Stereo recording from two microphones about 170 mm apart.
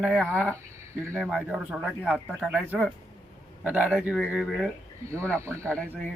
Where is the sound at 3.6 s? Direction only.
5° right (ahead or behind).